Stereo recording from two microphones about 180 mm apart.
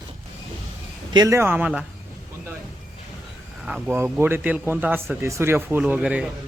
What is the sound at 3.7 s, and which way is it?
Speech, 5° right (ahead or behind).